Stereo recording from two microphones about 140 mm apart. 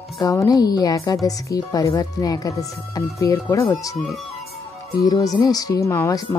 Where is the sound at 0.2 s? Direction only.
25° left (ahead or behind).